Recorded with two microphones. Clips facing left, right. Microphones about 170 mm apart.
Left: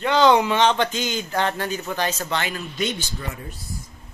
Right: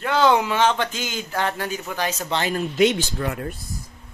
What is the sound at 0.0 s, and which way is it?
Speech, 5° right (ahead or behind).